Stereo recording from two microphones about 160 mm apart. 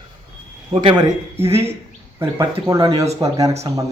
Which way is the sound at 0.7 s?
30° right (ahead or behind).